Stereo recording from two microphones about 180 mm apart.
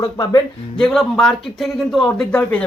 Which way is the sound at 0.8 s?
Centre (ahead or behind).